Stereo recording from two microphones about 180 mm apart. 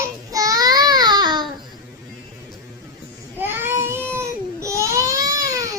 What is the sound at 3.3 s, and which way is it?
Baby cry, 10° right (ahead or behind).